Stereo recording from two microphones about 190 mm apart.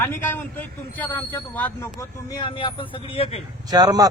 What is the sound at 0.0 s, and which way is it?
A man's voice, 10° left (ahead or behind).